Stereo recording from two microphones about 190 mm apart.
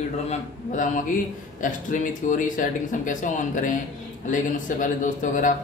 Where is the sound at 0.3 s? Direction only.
40° left (ahead or behind).